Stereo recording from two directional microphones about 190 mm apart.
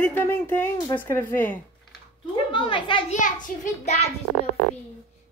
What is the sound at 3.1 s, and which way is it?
Speech, 40° left (ahead or behind).